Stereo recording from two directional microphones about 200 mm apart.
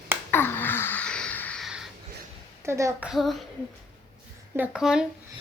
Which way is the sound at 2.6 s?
15° right (ahead or behind).